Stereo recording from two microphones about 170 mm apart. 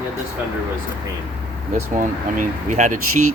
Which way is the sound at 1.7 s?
50° right (ahead or behind).